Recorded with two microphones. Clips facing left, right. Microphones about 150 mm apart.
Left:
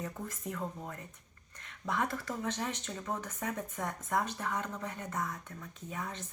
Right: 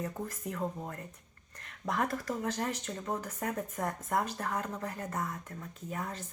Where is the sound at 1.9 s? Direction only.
40° right (ahead or behind).